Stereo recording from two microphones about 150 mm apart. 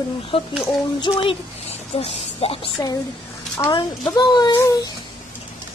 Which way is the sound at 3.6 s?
30° left (ahead or behind).